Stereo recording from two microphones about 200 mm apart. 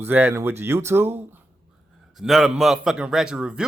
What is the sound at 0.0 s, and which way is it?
Speech, 10° right (ahead or behind).